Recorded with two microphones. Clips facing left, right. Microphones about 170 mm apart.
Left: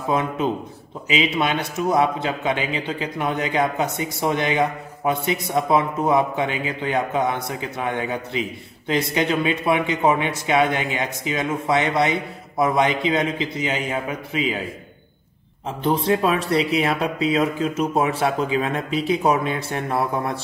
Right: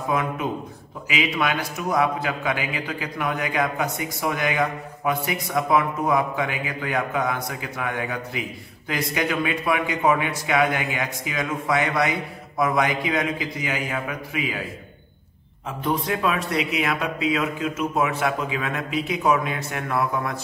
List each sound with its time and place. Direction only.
0.1 s a man's voice: 25° left (ahead or behind)
15.8 s speech: 30° left (ahead or behind)